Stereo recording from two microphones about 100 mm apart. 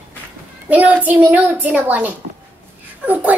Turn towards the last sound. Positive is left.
turn(degrees=-15)  # may be behind; listen again after turning